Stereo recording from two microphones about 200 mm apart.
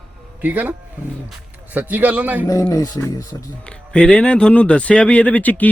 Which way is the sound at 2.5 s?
15° left (ahead or behind).